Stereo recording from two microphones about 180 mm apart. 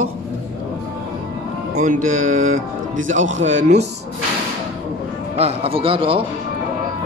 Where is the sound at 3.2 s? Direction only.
40° right (ahead or behind).